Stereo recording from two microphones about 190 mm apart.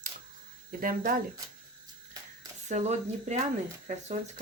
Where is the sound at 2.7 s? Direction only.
35° right (ahead or behind).